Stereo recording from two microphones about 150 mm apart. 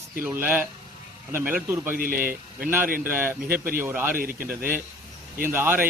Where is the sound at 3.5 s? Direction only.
75° right (ahead or behind).